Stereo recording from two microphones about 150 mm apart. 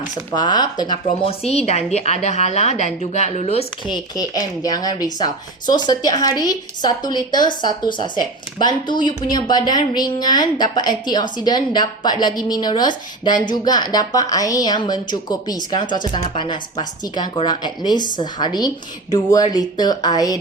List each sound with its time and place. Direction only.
0.3 s speech: 30° left (ahead or behind); by 3.7 s 45° left (ahead or behind)
3.8 s a woman's voice: 25° left (ahead or behind)